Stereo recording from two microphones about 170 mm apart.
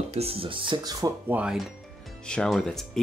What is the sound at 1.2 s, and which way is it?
Speech, 5° right (ahead or behind).